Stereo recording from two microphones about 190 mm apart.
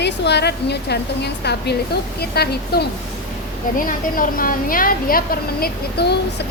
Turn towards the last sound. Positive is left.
turn(degrees=60)  # may be behind; listen again after turning